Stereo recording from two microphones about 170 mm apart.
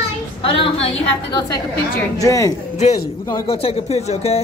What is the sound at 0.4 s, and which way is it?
Speech, 35° left (ahead or behind).